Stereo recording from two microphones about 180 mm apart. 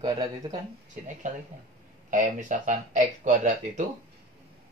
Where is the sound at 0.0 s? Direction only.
20° right (ahead or behind).